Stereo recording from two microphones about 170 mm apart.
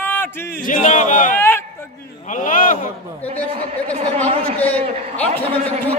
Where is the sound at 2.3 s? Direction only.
50° left (ahead or behind).